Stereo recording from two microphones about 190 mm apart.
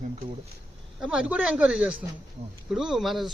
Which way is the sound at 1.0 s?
5° right (ahead or behind).